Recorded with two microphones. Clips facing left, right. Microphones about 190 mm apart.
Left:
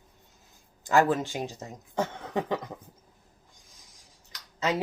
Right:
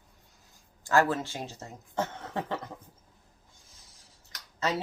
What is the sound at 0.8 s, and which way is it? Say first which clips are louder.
Speech: left 2 dB; 15° left (ahead or behind).